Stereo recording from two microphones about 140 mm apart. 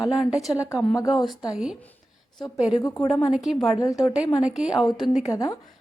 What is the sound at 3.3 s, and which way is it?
A woman's voice, centre (ahead or behind).